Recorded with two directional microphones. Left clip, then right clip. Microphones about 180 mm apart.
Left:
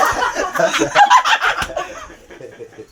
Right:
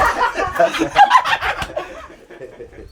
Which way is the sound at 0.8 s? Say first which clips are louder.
Left 2 dB; 10° left (ahead or behind).